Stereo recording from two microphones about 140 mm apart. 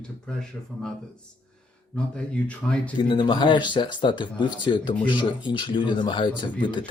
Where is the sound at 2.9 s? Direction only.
35° left (ahead or behind).